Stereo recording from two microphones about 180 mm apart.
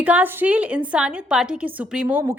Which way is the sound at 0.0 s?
10° right (ahead or behind).